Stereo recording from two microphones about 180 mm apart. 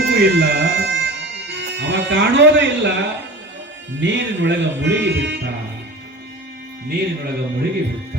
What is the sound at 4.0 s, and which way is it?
Speech, 80° right.